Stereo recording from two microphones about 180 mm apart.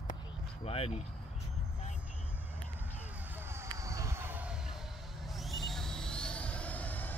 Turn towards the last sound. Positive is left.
turn(degrees=10)  # may be behind; listen again after turning